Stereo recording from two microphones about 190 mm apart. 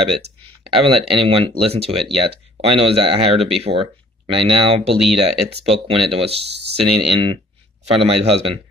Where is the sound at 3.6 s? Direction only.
30° right (ahead or behind).